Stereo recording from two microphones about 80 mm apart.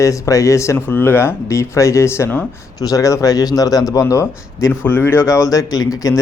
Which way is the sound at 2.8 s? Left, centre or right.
Left.